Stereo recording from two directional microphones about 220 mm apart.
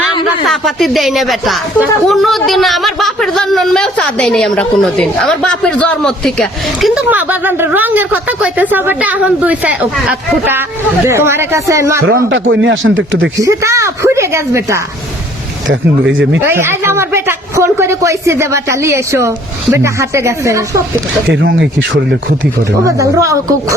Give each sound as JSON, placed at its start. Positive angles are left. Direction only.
{"t": 0.4, "sound": "a woman's voice", "side_deg": 0}
{"t": 12.1, "sound": "speech", "side_deg": -55}
{"t": 13.4, "sound": "a woman's voice", "side_deg": -15}
{"t": 15.7, "sound": "speech", "side_deg": -55}
{"t": 16.4, "sound": "a woman's voice", "side_deg": -10}
{"t": 21.4, "sound": "speech", "side_deg": -55}
{"t": 22.9, "sound": "a woman's voice", "side_deg": -15}